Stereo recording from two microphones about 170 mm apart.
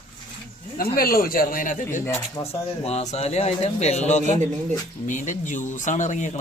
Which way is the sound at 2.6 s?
40° left (ahead or behind).